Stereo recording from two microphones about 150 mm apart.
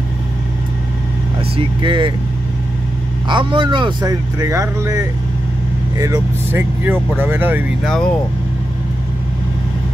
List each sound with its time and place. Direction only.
1.8 s speech: 35° right (ahead or behind)
3.3 s speech: 30° right (ahead or behind); by 7.6 s 15° right (ahead or behind)
7.8 s speech: 5° left (ahead or behind)